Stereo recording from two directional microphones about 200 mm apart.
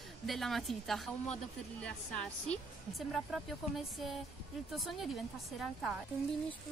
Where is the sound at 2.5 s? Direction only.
Centre (ahead or behind).